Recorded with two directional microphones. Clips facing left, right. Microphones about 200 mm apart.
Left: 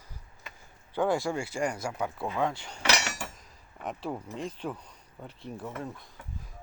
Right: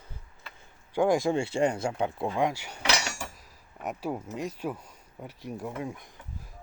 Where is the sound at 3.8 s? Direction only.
10° right (ahead or behind).